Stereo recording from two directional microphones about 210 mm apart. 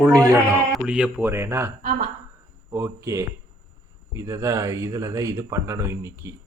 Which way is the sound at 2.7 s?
15° right (ahead or behind).